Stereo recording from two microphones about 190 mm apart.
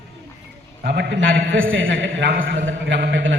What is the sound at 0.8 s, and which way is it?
A man's voice, 65° right (ahead or behind).